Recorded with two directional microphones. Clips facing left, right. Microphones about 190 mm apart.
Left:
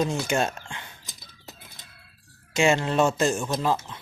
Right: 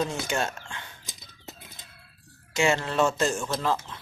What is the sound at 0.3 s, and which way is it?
Speech, 15° left (ahead or behind).